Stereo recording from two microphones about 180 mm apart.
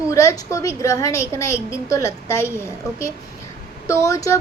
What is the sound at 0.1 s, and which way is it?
A woman's voice, 15° left (ahead or behind).